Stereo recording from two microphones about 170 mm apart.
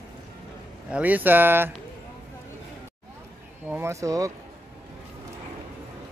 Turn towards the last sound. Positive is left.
turn(degrees=-20)  # may be behind; listen again after turning